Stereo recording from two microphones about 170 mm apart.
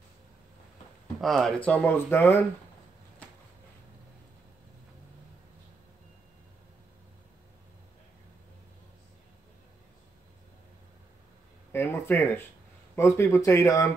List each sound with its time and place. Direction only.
1.2 s speech: centre (ahead or behind)
11.7 s a sound: 15° left (ahead or behind)
12.9 s speech: 15° left (ahead or behind)